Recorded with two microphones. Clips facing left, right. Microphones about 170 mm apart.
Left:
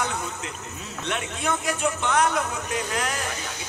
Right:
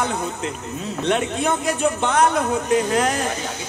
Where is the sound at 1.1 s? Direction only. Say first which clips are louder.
Right 7 dB; 30° right (ahead or behind).